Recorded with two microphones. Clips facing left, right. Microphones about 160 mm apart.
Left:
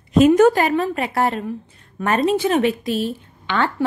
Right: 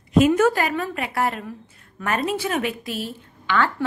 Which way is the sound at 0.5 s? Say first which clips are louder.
Left 5 dB; 25° left (ahead or behind).